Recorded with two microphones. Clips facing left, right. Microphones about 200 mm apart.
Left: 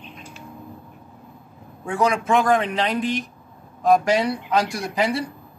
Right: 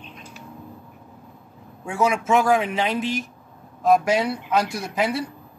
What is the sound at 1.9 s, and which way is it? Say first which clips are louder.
A man's voice: even; 5° right (ahead or behind).